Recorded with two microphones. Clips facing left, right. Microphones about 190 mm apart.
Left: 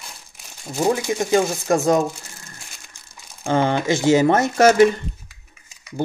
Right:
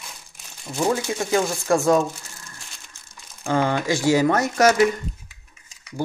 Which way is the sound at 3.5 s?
25° left (ahead or behind).